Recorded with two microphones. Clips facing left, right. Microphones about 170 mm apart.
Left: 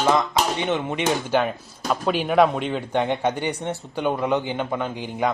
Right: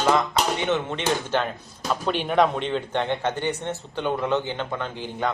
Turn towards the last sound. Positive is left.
turn(degrees=10)  # may be behind; listen again after turning